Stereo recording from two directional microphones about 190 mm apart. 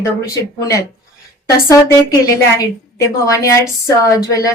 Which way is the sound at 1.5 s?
20° left (ahead or behind).